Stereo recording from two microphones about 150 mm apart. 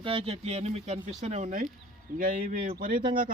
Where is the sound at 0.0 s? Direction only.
35° right (ahead or behind); by 1.6 s 55° right (ahead or behind).